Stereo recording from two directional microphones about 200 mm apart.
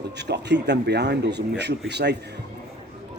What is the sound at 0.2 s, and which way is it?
Speech, 60° right (ahead or behind).